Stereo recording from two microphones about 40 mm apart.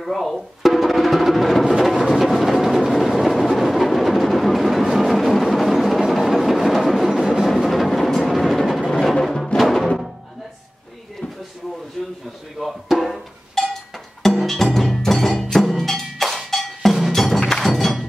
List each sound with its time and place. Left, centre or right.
0.0 s speech: centre
0.7 s music: centre
12.5 s music: centre
13.6 s cowbell: centre
14.2 s music: centre
15.8 s percussion: centre
17.6 s thunk: centre